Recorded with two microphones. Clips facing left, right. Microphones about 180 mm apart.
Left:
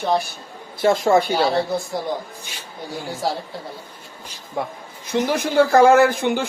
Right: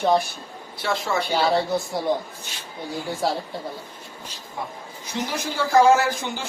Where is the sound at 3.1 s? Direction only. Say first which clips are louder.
Even; centre (ahead or behind).